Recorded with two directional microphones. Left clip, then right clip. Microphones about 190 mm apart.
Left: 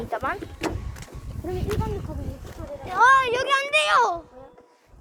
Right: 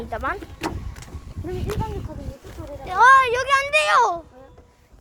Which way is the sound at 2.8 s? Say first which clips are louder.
Right 4 dB; 20° right (ahead or behind).